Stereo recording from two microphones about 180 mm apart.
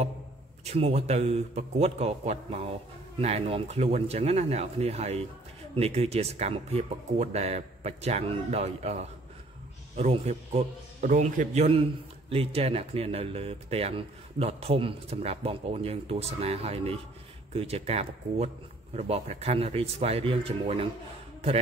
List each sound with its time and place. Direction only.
0.7 s a man's voice: 35° right (ahead or behind)